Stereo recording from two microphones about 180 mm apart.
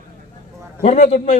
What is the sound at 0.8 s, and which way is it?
Speech, 40° left (ahead or behind).